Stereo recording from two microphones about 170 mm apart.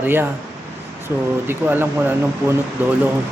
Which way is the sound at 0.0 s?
10° right (ahead or behind).